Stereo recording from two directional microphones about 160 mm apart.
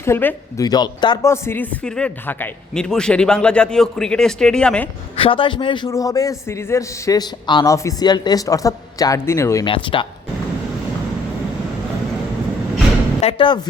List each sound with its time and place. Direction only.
0.0 s speech: 15° left (ahead or behind)
0.6 s speech: 25° left (ahead or behind); by 4.9 s 5° left (ahead or behind)
5.1 s a man's voice: 35° left (ahead or behind); by 9.6 s 20° left (ahead or behind)
9.6 s speech: 30° left (ahead or behind)
13.2 s speech: 30° left (ahead or behind)